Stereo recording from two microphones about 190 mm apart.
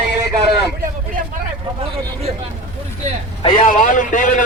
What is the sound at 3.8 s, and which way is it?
Speech, 45° left (ahead or behind).